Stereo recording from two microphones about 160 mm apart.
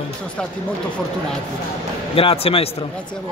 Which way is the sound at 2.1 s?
35° left (ahead or behind).